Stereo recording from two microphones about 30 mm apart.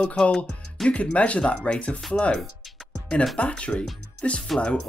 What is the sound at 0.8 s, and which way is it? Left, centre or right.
Speech, left.